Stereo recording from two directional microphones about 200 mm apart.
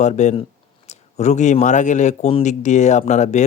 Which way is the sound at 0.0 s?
35° left (ahead or behind).